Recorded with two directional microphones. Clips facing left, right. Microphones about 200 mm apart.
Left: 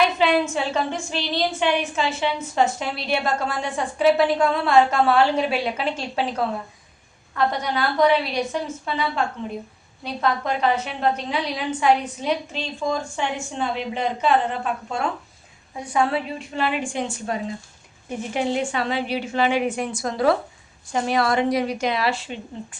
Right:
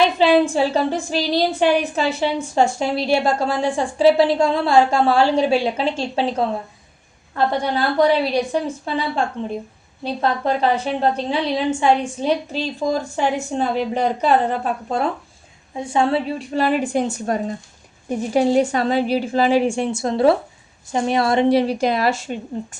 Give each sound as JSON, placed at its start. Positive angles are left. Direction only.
{"t": 0.0, "sound": "a woman's voice", "side_deg": -30}
{"t": 15.7, "sound": "a woman's voice", "side_deg": -25}